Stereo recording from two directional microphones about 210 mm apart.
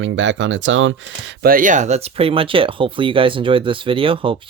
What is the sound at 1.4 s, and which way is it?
Speech, 40° right (ahead or behind).